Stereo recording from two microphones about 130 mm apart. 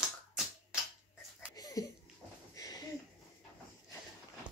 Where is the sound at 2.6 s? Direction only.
30° left (ahead or behind).